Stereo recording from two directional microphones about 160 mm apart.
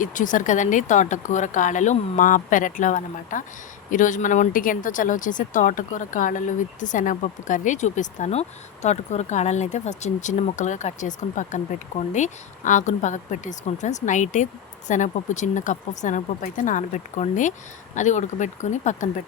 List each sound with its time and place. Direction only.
0.0 s speech: 55° left (ahead or behind)